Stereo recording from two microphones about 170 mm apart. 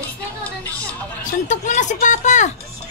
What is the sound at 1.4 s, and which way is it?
Speech, 45° left (ahead or behind).